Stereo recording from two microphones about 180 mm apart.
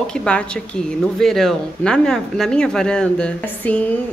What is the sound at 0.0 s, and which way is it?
Speech, 5° left (ahead or behind).